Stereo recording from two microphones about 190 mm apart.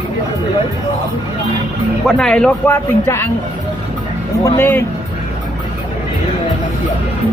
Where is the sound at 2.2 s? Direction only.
5° left (ahead or behind).